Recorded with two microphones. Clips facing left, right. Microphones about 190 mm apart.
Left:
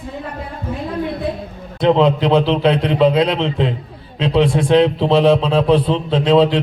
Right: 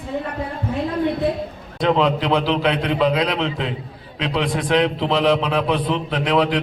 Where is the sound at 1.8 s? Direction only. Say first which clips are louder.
Left 5 dB; 30° left (ahead or behind).